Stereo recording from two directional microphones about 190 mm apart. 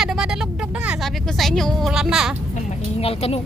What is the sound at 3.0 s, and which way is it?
Speech, 30° left (ahead or behind).